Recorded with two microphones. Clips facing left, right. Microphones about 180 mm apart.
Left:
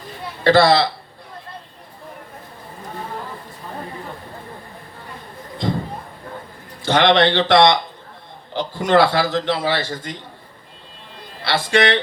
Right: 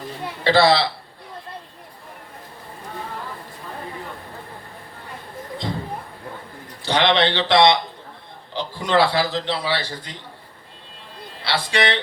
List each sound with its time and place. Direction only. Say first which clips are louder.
0.4 s a man's voice: left 3 dB; 50° left (ahead or behind)
6.8 s a man's voice: left 4 dB; 50° left (ahead or behind)
11.4 s a man's voice: left 4 dB; 50° left (ahead or behind)